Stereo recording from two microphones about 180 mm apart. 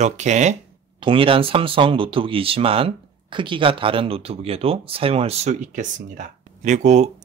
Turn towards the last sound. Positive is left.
turn(degrees=-40)  # may be behind; listen again after turning